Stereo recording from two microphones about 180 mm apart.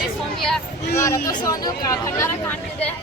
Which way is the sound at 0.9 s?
15° left (ahead or behind).